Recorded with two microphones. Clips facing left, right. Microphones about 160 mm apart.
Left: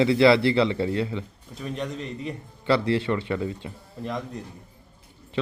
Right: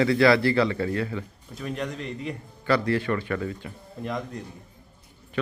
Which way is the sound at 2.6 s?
25° left (ahead or behind).